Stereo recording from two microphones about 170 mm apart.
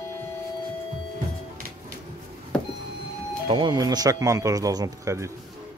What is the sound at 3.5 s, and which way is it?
Speech, 30° right (ahead or behind).